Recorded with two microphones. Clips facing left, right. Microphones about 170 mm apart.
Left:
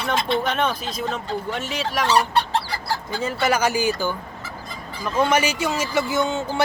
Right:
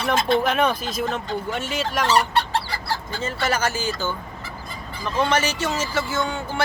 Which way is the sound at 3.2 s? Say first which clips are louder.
Left 3 dB; 10° left (ahead or behind).